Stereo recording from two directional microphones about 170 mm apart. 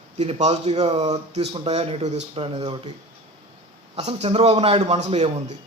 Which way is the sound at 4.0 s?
40° right (ahead or behind).